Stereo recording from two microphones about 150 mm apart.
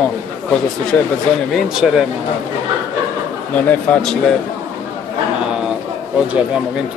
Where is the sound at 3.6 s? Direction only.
10° left (ahead or behind).